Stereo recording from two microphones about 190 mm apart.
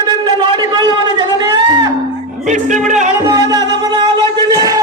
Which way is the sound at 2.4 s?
40° right (ahead or behind).